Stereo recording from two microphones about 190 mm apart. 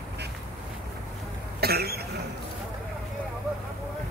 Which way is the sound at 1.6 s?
55° right (ahead or behind).